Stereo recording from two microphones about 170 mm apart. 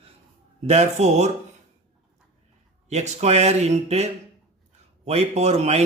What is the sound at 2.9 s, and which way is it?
Speech, 40° right (ahead or behind).